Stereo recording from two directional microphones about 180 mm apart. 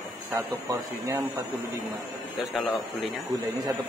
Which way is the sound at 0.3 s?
15° right (ahead or behind).